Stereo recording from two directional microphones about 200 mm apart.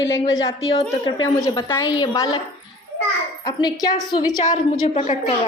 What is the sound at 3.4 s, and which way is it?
Speech, 20° left (ahead or behind).